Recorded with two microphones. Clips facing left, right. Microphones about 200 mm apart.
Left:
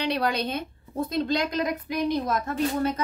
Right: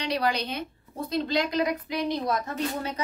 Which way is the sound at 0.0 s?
60° left (ahead or behind).